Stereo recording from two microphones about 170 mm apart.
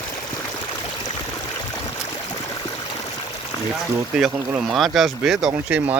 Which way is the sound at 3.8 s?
Centre (ahead or behind).